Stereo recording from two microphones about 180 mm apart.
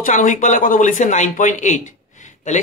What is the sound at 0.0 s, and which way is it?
Speech, 45° left (ahead or behind).